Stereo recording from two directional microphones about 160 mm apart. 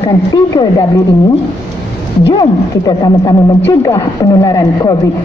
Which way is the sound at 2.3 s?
25° left (ahead or behind).